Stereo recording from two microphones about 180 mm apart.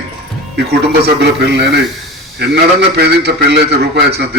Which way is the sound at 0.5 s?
70° right (ahead or behind).